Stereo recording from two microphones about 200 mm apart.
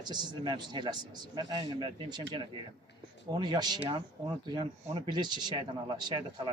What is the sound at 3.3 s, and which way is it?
A man's voice, 20° right (ahead or behind).